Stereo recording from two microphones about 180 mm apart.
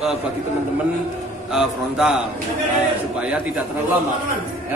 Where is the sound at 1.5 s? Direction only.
5° right (ahead or behind).